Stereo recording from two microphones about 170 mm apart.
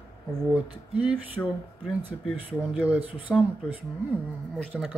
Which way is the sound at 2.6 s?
10° right (ahead or behind).